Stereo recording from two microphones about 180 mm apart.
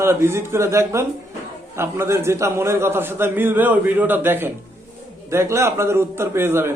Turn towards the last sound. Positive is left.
turn(degrees=-15)  # may be behind; listen again after turning